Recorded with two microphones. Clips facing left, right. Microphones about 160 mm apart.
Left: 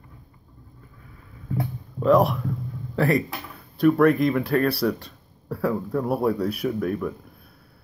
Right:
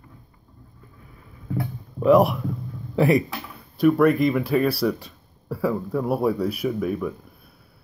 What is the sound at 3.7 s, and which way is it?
Speech, 5° right (ahead or behind).